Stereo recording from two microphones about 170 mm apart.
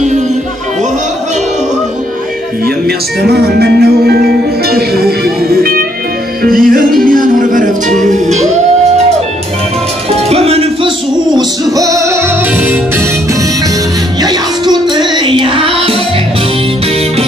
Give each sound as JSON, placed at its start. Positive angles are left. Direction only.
{"t": 3.2, "sound": "speech", "side_deg": -70}
{"t": 6.4, "sound": "music", "side_deg": -55}
{"t": 10.1, "sound": "music", "side_deg": -35}
{"t": 14.2, "sound": "music", "side_deg": -25}